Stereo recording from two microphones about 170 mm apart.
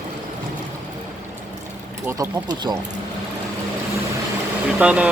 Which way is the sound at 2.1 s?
20° right (ahead or behind).